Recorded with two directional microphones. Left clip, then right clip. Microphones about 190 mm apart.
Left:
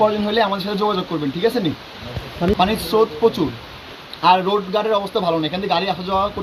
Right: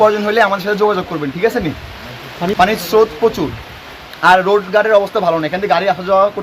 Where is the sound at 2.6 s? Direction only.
10° right (ahead or behind).